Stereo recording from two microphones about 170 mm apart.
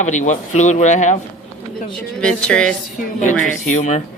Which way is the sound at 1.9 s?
5° left (ahead or behind).